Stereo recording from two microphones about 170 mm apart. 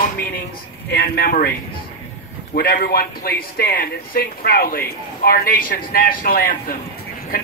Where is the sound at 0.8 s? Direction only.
65° left (ahead or behind).